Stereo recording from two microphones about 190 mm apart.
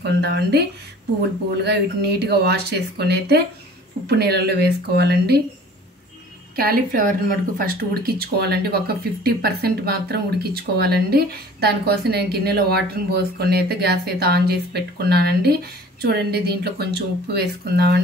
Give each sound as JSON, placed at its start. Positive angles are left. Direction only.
{"t": 0.0, "sound": "speech", "side_deg": -60}
{"t": 6.5, "sound": "a woman's voice", "side_deg": -50}